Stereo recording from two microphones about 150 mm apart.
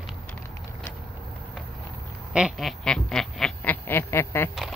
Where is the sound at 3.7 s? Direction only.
15° left (ahead or behind).